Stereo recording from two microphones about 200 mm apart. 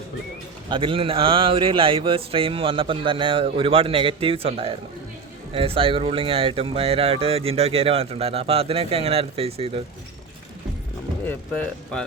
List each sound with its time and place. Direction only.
0.7 s speech: 25° right (ahead or behind)
11.3 s speech: 5° left (ahead or behind)